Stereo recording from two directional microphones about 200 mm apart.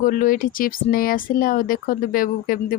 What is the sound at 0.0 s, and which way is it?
Speech, 45° left (ahead or behind).